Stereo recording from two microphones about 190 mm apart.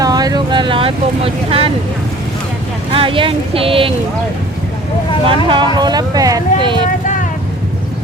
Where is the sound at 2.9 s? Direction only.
25° right (ahead or behind).